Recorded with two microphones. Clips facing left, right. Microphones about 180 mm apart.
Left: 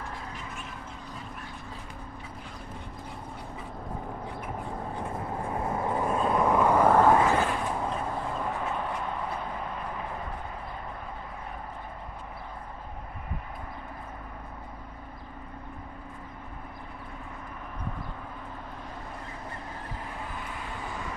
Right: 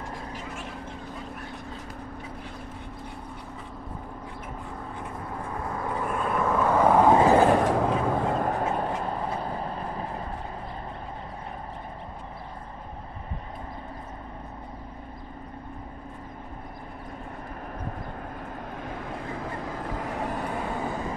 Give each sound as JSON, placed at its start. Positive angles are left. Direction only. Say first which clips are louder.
{"t": 5.7, "sound": "vehicle", "louder": "left 2 dB", "side_deg": 20}
{"t": 6.8, "sound": "vehicle", "louder": "right 3 dB", "side_deg": -10}
{"t": 7.1, "sound": "a sound", "louder": "right 4 dB", "side_deg": -30}
{"t": 7.6, "sound": "vehicle", "louder": "right 7 dB", "side_deg": -85}
{"t": 19.8, "sound": "vehicle", "louder": "right 8 dB", "side_deg": -85}
{"t": 20.6, "sound": "vehicle", "louder": "right 7 dB", "side_deg": -35}